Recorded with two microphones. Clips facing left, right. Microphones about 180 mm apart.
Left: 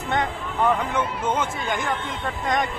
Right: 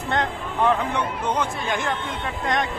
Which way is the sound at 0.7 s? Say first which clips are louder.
Even; centre (ahead or behind).